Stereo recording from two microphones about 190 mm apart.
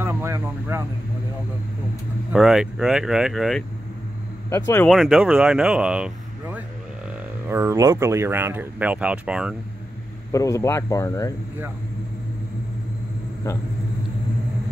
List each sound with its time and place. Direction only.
0.0 s vehicle: 15° right (ahead or behind)
2.3 s speech: centre (ahead or behind)
4.5 s speech: 15° left (ahead or behind)
4.8 s speech: centre (ahead or behind)
10.3 s speech: 15° left (ahead or behind)